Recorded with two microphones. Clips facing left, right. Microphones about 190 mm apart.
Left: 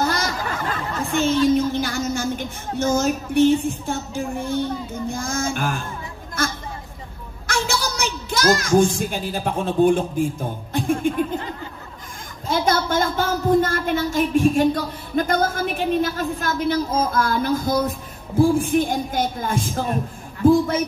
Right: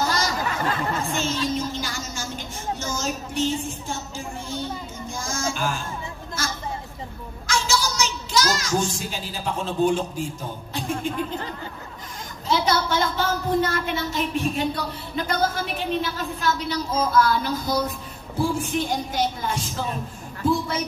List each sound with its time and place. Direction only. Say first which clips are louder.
0.0 s a sound: left 1 dB; 55° left (ahead or behind)
7.4 s a woman's voice: left 1 dB; 55° left (ahead or behind)
12.4 s speech: left 2 dB; 50° left (ahead or behind)